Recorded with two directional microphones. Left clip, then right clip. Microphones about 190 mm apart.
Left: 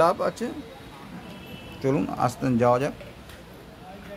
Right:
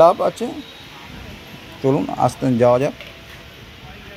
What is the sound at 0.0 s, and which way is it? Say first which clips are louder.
Speech: right 9 dB; 15° right (ahead or behind).